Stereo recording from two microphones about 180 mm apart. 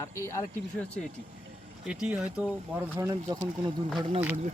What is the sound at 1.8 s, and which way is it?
Speech, 5° right (ahead or behind).